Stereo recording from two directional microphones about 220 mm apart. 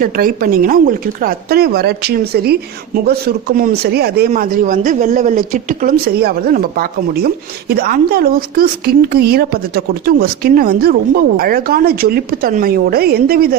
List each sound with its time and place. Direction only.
0.0 s a woman's voice: 40° right (ahead or behind)